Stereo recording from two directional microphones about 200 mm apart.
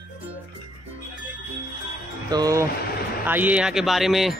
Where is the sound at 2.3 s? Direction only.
20° right (ahead or behind).